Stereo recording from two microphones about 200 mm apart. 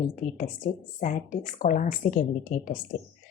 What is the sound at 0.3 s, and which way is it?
A woman's voice, 40° left (ahead or behind).